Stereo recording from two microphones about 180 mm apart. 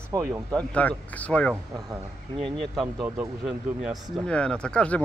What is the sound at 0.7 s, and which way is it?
Speech, 10° left (ahead or behind).